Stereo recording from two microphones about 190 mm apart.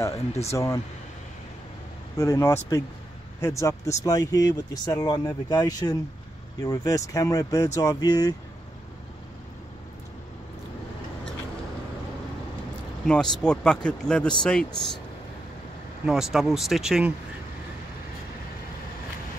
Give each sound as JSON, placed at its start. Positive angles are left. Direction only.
{"t": 0.5, "sound": "speech", "side_deg": 15}
{"t": 2.1, "sound": "speech", "side_deg": 15}
{"t": 13.0, "sound": "speech", "side_deg": 5}
{"t": 16.1, "sound": "speech", "side_deg": 0}